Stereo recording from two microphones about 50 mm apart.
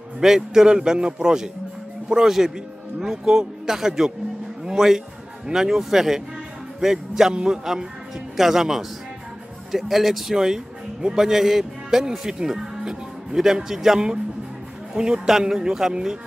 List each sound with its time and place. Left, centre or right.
0.2 s a man's voice: centre